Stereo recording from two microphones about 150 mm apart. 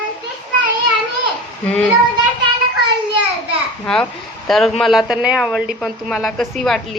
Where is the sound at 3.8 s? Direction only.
5° left (ahead or behind).